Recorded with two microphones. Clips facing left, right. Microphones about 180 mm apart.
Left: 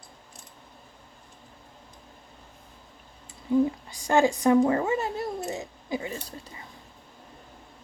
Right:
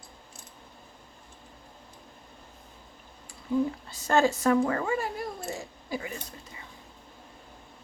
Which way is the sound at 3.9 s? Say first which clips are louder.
Left 2 dB; 15° left (ahead or behind).